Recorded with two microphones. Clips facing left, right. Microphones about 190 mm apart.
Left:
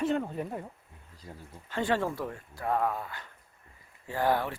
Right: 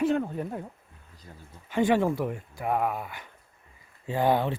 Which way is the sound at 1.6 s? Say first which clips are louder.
Right 6 dB; 15° right (ahead or behind).